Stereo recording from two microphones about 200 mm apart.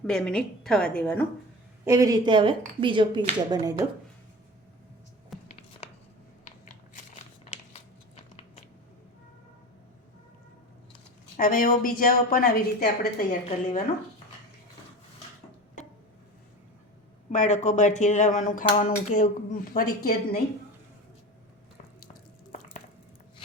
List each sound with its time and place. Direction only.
0.0 s a woman's voice: 5° left (ahead or behind)
1.8 s speech: 15° right (ahead or behind)
5.3 s a sound: centre (ahead or behind)
7.5 s a sound: 30° left (ahead or behind)
11.3 s a woman's voice: 45° left (ahead or behind)
17.3 s a woman's voice: 35° left (ahead or behind)